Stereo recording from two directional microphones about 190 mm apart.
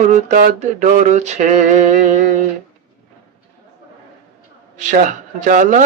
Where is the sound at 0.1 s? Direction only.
40° right (ahead or behind).